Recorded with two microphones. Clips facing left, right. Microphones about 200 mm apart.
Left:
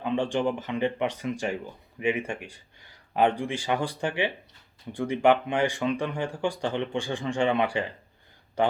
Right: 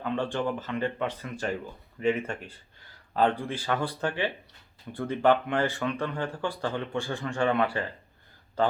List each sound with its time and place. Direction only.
0.0 s speech: 15° left (ahead or behind)